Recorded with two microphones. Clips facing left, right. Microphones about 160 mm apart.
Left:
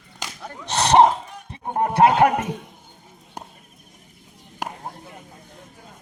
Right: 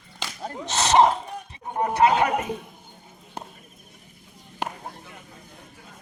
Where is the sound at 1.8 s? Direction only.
60° left (ahead or behind).